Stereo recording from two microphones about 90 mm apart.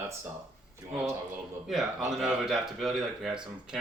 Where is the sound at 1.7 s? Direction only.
5° right (ahead or behind).